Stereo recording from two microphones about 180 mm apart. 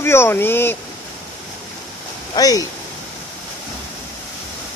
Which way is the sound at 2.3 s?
20° left (ahead or behind).